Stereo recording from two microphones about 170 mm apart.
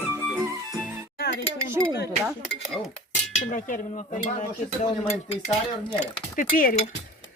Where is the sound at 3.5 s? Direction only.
50° left (ahead or behind).